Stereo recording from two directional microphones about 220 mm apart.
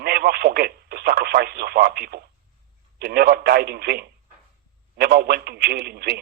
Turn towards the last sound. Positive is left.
turn(degrees=-45)  # may be behind; listen again after turning